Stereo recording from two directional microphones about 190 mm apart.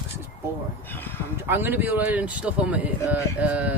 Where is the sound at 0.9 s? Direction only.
10° left (ahead or behind).